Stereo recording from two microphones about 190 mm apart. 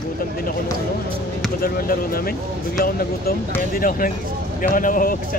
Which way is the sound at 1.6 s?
50° left (ahead or behind).